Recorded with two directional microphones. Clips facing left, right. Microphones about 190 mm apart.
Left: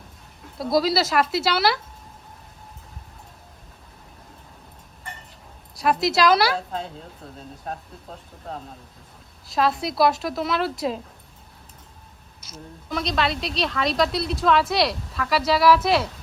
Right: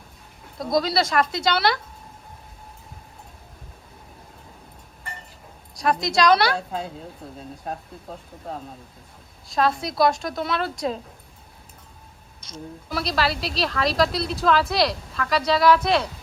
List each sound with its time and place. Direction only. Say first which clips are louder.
0.6 s a woman's voice: left 1 dB; 5° left (ahead or behind)
5.7 s a woman's voice: left 1 dB; 5° left (ahead or behind)
9.5 s a woman's voice: even; centre (ahead or behind)
12.4 s a woman's voice: right 4 dB; centre (ahead or behind)